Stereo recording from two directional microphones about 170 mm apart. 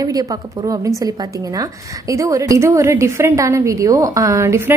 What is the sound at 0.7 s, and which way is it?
A woman's voice, 20° right (ahead or behind).